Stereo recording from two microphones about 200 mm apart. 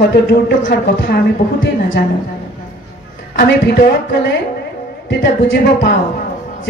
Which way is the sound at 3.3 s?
55° left (ahead or behind).